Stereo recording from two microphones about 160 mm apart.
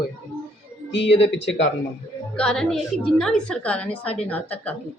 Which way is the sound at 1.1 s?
35° left (ahead or behind).